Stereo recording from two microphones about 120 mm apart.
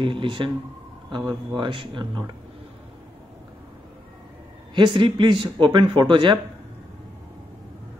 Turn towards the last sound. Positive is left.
turn(degrees=-40)  # may be behind; listen again after turning